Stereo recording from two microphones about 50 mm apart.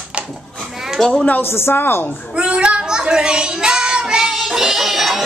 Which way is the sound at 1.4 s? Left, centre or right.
Left.